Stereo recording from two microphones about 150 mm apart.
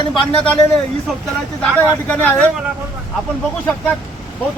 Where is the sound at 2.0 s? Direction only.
10° left (ahead or behind).